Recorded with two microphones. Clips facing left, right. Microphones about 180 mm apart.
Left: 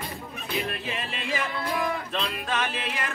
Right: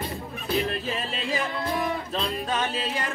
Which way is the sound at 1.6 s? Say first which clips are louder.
Right 1 dB; 25° right (ahead or behind).